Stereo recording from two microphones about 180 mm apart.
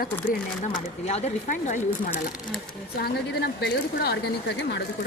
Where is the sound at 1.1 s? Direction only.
35° left (ahead or behind).